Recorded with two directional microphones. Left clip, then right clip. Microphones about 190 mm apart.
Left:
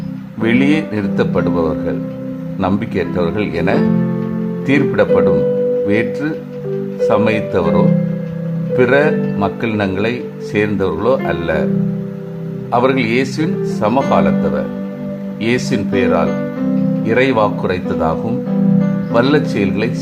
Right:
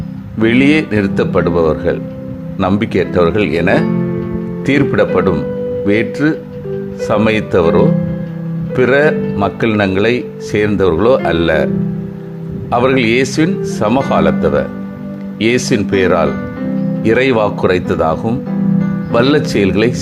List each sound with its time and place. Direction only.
0.3 s speech: 20° right (ahead or behind)
12.7 s speech: 15° right (ahead or behind)
19.1 s speech: 20° right (ahead or behind)